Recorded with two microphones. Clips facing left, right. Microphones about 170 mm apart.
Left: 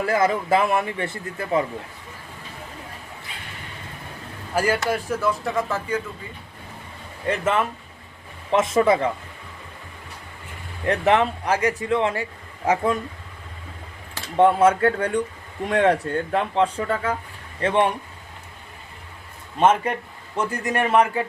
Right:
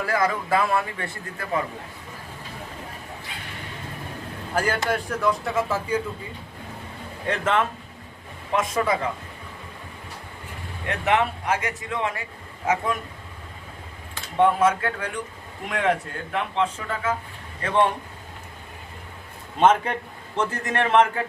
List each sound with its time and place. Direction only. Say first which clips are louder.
0.0 s a man's voice: left 3 dB; 25° left (ahead or behind)
4.5 s a man's voice: left 2 dB; 5° left (ahead or behind)
7.3 s a man's voice: left 1 dB; 10° left (ahead or behind)
8.5 s a man's voice: left 5 dB; 25° left (ahead or behind)
10.8 s speech: left 4 dB; 35° left (ahead or behind)
14.3 s speech: left 3 dB; 30° left (ahead or behind)
19.5 s a man's voice: even; 10° left (ahead or behind)